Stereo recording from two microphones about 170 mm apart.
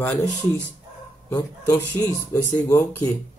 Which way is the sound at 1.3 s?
20° left (ahead or behind).